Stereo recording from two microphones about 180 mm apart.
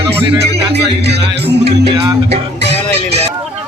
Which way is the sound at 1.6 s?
70° right (ahead or behind).